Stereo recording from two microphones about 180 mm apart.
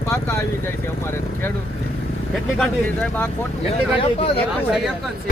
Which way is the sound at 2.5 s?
5° left (ahead or behind).